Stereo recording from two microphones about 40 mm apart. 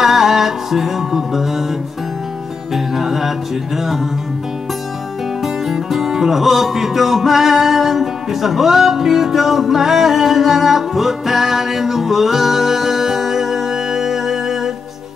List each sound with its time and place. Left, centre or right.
0.0 s music: centre
2.7 s music: centre
5.4 s music: centre